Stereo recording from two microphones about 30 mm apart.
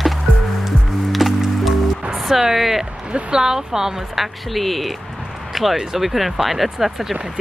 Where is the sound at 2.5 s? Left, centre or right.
Centre.